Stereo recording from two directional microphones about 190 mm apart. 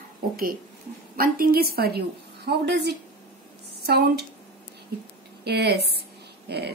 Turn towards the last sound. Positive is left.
turn(degrees=-60)  # may be behind; listen again after turning